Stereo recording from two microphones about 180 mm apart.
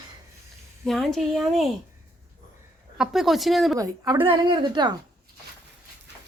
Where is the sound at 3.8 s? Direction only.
20° right (ahead or behind).